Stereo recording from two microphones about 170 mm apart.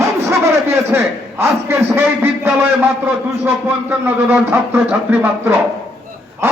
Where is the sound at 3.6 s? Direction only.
10° right (ahead or behind).